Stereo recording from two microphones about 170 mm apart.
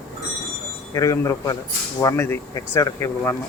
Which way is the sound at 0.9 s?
20° left (ahead or behind).